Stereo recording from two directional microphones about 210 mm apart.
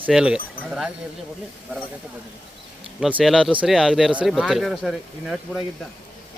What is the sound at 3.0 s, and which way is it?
Speech, 5° right (ahead or behind).